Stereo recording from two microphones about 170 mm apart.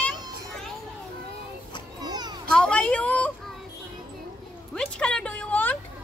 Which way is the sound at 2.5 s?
5° left (ahead or behind).